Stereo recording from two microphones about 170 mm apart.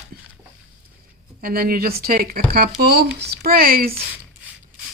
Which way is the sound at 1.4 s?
60° right (ahead or behind).